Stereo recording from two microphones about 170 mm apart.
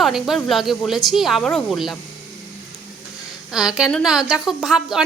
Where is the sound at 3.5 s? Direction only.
5° right (ahead or behind).